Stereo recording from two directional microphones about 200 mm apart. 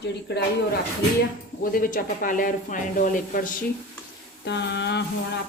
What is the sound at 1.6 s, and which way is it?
Speech, 45° left (ahead or behind).